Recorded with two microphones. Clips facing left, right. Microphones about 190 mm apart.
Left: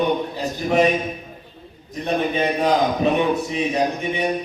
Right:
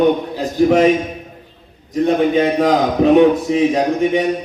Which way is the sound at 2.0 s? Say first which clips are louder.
Right 6 dB; 90° right.